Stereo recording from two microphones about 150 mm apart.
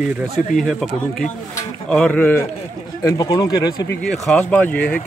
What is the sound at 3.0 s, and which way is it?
Speech, 25° left (ahead or behind).